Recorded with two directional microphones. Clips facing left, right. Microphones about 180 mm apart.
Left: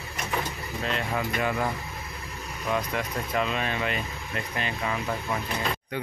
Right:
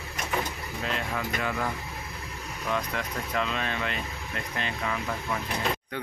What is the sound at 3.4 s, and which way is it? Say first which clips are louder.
Speech: left 2 dB; 10° left (ahead or behind).